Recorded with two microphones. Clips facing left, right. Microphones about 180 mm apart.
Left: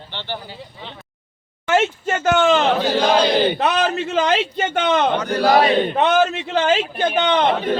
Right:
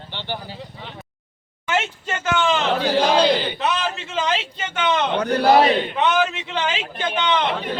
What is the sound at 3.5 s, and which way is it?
A man's voice, 50° left (ahead or behind).